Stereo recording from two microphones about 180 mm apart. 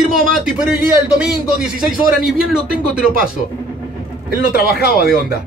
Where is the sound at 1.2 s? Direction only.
Centre (ahead or behind).